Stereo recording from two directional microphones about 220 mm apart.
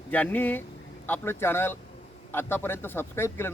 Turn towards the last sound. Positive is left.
turn(degrees=10)  # may be behind; listen again after turning